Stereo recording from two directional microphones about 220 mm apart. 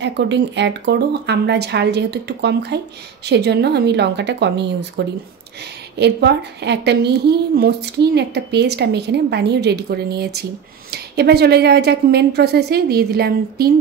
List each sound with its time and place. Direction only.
0.0 s a woman's voice: 55° right (ahead or behind)